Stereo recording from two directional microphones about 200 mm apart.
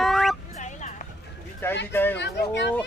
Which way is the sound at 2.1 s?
60° left (ahead or behind).